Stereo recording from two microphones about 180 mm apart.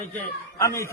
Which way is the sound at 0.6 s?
15° left (ahead or behind).